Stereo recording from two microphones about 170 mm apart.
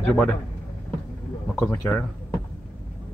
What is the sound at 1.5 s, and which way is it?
Speech, 15° left (ahead or behind).